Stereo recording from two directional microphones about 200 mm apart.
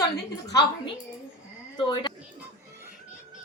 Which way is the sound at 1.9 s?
20° left (ahead or behind).